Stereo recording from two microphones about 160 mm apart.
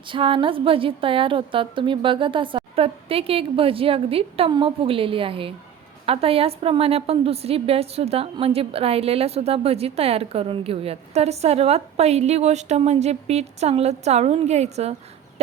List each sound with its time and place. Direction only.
0.1 s a woman's voice: 30° right (ahead or behind)